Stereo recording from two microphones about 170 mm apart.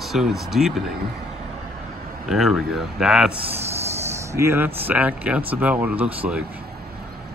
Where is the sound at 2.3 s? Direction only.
5° right (ahead or behind).